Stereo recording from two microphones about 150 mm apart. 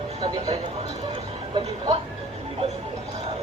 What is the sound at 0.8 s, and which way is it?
Speech, 35° right (ahead or behind).